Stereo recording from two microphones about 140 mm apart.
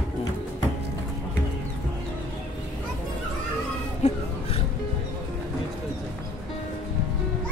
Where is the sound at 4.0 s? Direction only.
50° left (ahead or behind).